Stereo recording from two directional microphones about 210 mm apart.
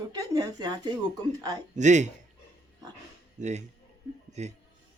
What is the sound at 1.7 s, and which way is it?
Speech, 35° right (ahead or behind).